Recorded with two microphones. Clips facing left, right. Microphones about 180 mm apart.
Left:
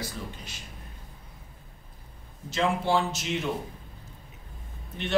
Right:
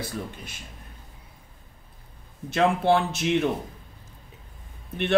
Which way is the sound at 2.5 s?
60° right (ahead or behind).